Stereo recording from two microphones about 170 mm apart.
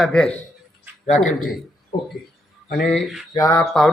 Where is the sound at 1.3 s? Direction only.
45° left (ahead or behind).